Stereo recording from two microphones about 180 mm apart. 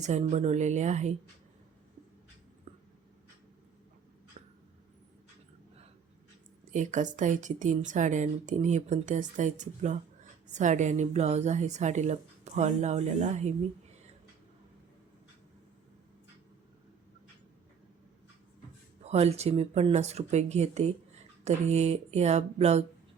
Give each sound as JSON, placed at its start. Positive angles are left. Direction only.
{"t": 0.0, "sound": "a woman's voice", "side_deg": -40}
{"t": 6.7, "sound": "a woman's voice", "side_deg": -45}
{"t": 19.0, "sound": "a woman's voice", "side_deg": -35}